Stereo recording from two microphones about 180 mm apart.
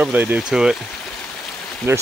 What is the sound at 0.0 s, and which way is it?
Speech, 10° right (ahead or behind).